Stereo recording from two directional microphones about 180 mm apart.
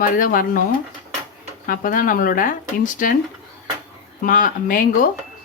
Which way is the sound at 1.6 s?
50° left (ahead or behind).